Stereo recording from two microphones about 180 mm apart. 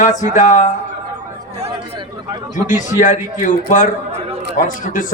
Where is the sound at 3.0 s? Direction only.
45° left (ahead or behind).